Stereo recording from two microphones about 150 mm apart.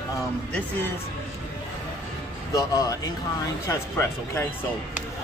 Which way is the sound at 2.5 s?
25° left (ahead or behind).